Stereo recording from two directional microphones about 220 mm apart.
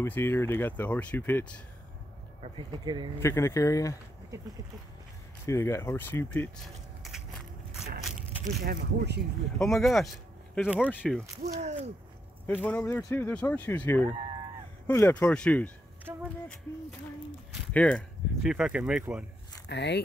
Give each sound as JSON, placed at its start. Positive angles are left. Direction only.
{"t": 0.0, "sound": "speech", "side_deg": 10}
{"t": 2.4, "sound": "speech", "side_deg": -20}
{"t": 3.2, "sound": "speech", "side_deg": 15}
{"t": 5.5, "sound": "speech", "side_deg": 10}
{"t": 8.6, "sound": "speech", "side_deg": -50}
{"t": 9.6, "sound": "speech", "side_deg": 0}
{"t": 11.4, "sound": "speech", "side_deg": -30}
{"t": 12.6, "sound": "speech", "side_deg": 10}
{"t": 17.7, "sound": "speech", "side_deg": 5}
{"t": 19.7, "sound": "speech", "side_deg": 50}